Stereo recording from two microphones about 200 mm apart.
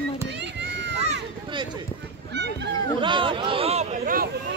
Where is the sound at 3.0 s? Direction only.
25° right (ahead or behind); by 4.3 s 40° right (ahead or behind).